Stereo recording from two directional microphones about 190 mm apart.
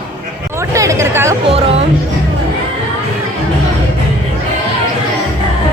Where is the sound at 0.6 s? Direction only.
15° right (ahead or behind).